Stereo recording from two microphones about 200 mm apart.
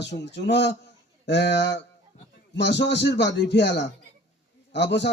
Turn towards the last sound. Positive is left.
turn(degrees=60)  # may be behind; listen again after turning